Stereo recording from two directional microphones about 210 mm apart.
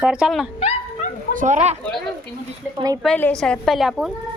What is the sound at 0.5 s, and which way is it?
Dog, 30° left (ahead or behind).